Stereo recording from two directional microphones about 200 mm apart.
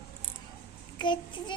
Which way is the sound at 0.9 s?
25° left (ahead or behind).